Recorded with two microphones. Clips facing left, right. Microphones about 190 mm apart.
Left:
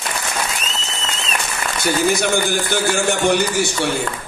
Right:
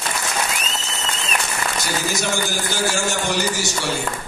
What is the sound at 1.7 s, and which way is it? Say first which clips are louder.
A man's voice: left 10 dB; 60° left (ahead or behind).